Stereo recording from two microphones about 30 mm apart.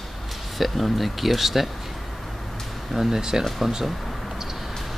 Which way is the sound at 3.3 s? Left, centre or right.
Right.